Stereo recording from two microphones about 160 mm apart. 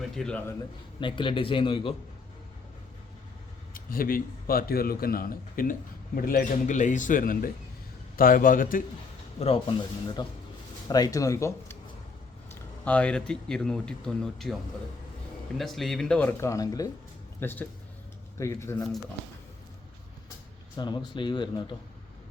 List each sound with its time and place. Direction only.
0.2 s speech: 5° left (ahead or behind)
0.9 s a man's voice: 30° left (ahead or behind)
3.8 s a man's voice: 60° left (ahead or behind)
9.4 s a man's voice: 35° left (ahead or behind)
10.2 s a man's voice: 25° left (ahead or behind)
17.4 s speech: 10° left (ahead or behind)
20.7 s speech: 25° left (ahead or behind)